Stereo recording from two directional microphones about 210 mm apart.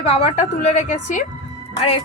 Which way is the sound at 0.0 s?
30° left (ahead or behind).